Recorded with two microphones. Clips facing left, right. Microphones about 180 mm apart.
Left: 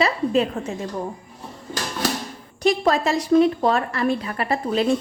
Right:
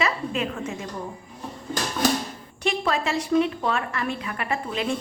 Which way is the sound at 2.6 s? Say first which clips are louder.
Left 6 dB; 40° left (ahead or behind).